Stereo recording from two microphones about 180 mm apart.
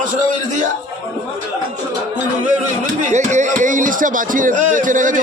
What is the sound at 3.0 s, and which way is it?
Music, 45° right (ahead or behind).